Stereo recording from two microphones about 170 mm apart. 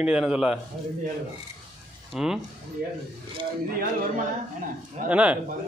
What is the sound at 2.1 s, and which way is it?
Speech, 5° right (ahead or behind).